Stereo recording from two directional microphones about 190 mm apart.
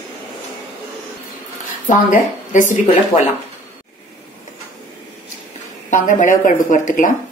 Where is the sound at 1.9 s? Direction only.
40° left (ahead or behind).